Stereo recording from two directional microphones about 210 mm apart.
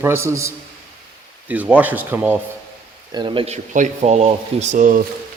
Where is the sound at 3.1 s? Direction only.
25° right (ahead or behind); by 5.0 s 40° right (ahead or behind).